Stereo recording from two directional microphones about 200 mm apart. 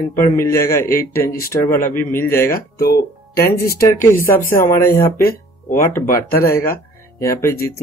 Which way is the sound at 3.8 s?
10° left (ahead or behind).